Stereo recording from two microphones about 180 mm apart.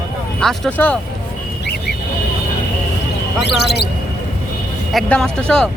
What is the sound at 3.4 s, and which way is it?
Speech, 70° left (ahead or behind).